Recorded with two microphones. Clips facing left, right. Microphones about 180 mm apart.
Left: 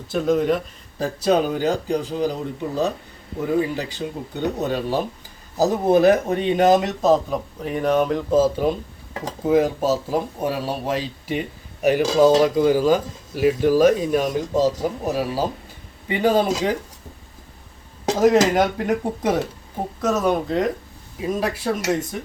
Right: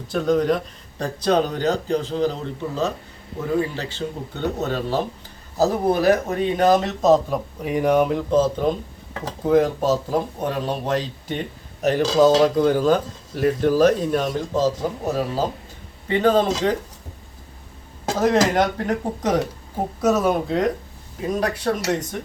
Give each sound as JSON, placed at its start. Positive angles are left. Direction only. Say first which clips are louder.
{"t": 0.1, "sound": "speech", "louder": "even", "side_deg": 5}
{"t": 7.0, "sound": "speech", "louder": "right 1 dB", "side_deg": 0}
{"t": 7.7, "sound": "speech", "louder": "right 1 dB", "side_deg": -15}
{"t": 8.3, "sound": "speech", "louder": "left 1 dB", "side_deg": 5}
{"t": 18.2, "sound": "speech", "louder": "left 2 dB", "side_deg": 5}
{"t": 20.0, "sound": "speech", "louder": "right 1 dB", "side_deg": -10}